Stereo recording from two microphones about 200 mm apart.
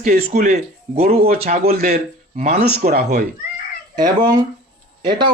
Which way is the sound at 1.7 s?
50° right (ahead or behind).